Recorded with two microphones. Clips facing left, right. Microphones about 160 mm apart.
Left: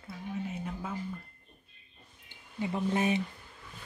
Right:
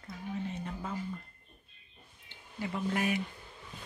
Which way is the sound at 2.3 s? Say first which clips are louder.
Left 4 dB; 20° left (ahead or behind).